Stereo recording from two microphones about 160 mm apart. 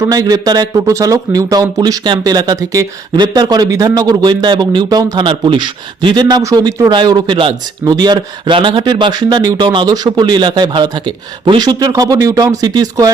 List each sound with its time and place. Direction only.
0.0 s speech: 20° right (ahead or behind)